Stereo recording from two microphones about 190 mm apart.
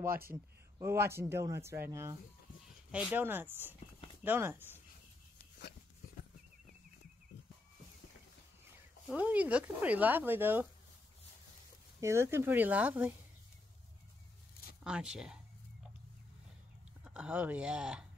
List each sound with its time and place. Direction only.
0.0 s speech: 50° right (ahead or behind)
0.7 s speech: 15° right (ahead or behind)
9.1 s speech: 10° right (ahead or behind)
12.0 s speech: 15° right (ahead or behind)
14.8 s speech: 5° right (ahead or behind)
17.0 s speech: 5° right (ahead or behind)